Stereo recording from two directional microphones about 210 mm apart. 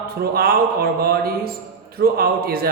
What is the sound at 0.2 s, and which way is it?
Speech, 45° right (ahead or behind).